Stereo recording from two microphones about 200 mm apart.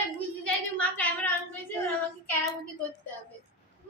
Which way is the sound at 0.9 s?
10° left (ahead or behind).